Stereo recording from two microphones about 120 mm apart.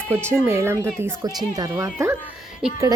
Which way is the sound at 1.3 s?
30° right (ahead or behind).